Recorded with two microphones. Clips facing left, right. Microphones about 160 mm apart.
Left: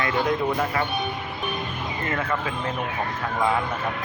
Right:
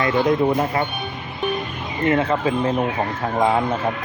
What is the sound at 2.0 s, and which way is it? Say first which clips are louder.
Speech: right 10 dB; 20° right (ahead or behind).